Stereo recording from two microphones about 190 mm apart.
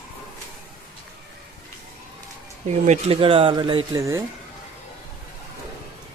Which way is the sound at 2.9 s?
30° right (ahead or behind).